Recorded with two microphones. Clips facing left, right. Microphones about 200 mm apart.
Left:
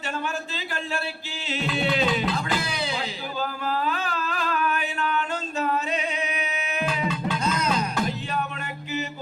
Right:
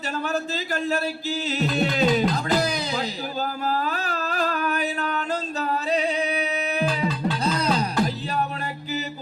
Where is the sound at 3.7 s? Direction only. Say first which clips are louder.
Left 1 dB; 40° right (ahead or behind).